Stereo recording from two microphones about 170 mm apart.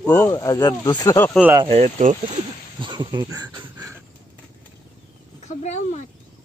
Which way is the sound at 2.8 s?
25° right (ahead or behind).